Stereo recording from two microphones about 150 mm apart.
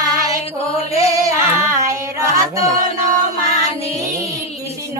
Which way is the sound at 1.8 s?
20° right (ahead or behind).